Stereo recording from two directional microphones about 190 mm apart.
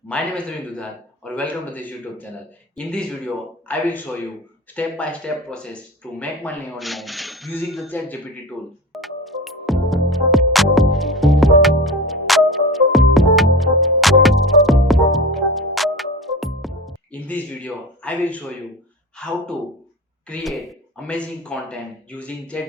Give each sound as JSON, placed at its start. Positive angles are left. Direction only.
{"t": 0.1, "sound": "a man's voice", "side_deg": 5}
{"t": 4.7, "sound": "a sound", "side_deg": 5}
{"t": 20.3, "sound": "speech", "side_deg": 0}